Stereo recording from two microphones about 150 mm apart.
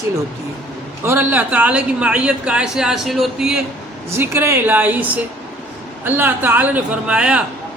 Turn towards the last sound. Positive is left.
turn(degrees=-5)  # may be behind; listen again after turning